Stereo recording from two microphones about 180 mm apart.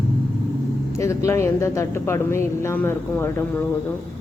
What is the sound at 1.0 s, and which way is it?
Speech, 15° left (ahead or behind).